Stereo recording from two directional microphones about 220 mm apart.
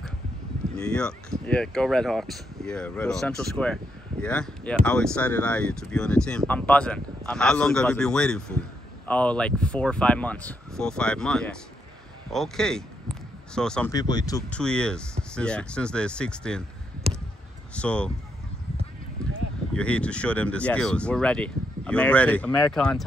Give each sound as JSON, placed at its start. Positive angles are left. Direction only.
{"t": 0.7, "sound": "speech", "side_deg": 5}
{"t": 13.8, "sound": "speech", "side_deg": 15}
{"t": 14.5, "sound": "speech", "side_deg": 5}
{"t": 17.1, "sound": "a sound", "side_deg": -25}
{"t": 17.7, "sound": "speech", "side_deg": 5}
{"t": 19.7, "sound": "speech", "side_deg": 5}